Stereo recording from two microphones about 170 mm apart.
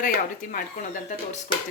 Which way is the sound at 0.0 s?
55° left (ahead or behind).